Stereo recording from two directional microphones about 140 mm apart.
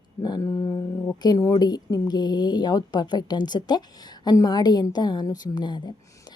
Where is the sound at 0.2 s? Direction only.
30° left (ahead or behind).